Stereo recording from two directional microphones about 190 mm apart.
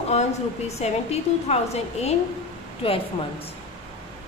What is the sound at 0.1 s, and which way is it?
A woman's voice, 35° left (ahead or behind).